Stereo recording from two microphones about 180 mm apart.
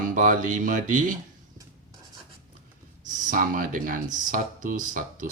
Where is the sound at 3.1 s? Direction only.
45° right (ahead or behind).